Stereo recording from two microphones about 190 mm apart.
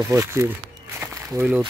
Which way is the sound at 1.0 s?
10° right (ahead or behind).